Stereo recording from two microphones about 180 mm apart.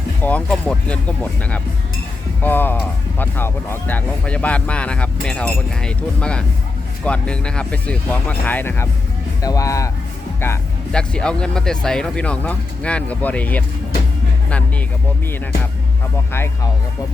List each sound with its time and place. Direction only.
0.2 s speech: 10° left (ahead or behind)